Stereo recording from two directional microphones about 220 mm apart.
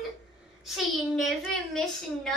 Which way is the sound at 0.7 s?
Centre (ahead or behind).